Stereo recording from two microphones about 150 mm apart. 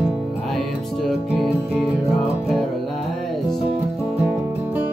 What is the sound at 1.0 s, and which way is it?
Music, centre (ahead or behind).